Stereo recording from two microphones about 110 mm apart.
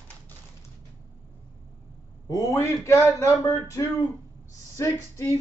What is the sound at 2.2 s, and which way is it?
Speech, 35° left (ahead or behind).